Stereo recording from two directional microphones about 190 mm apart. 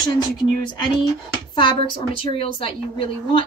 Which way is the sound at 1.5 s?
25° left (ahead or behind).